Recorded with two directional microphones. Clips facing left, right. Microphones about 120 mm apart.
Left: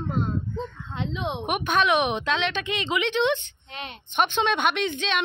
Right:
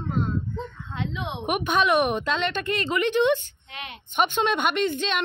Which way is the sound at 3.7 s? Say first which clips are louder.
Left 1 dB; 30° left (ahead or behind).